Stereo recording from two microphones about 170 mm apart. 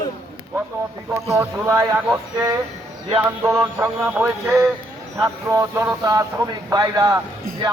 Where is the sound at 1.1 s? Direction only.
15° right (ahead or behind).